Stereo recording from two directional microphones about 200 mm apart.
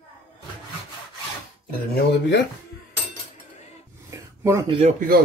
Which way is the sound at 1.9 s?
60° left (ahead or behind).